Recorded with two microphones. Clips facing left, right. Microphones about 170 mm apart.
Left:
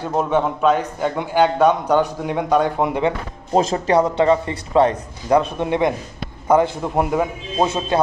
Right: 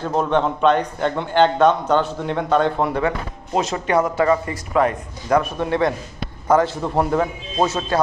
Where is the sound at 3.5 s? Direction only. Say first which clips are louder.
Left 3 dB; 35° left (ahead or behind); by 8.0 s 15° left (ahead or behind).